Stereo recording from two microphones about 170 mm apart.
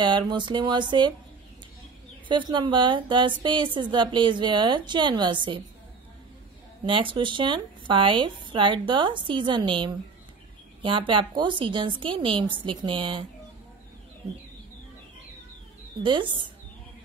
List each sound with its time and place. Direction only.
0.0 s speech: 25° right (ahead or behind)
2.2 s speech: 30° right (ahead or behind)
6.9 s a woman's voice: 30° right (ahead or behind)
16.0 s speech: 30° right (ahead or behind)